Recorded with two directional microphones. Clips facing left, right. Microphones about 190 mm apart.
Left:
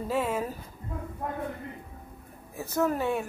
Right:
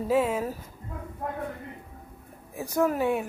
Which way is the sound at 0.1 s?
10° right (ahead or behind).